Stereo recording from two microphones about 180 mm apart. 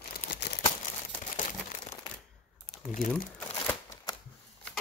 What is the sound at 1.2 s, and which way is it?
Crumpling, 45° left (ahead or behind).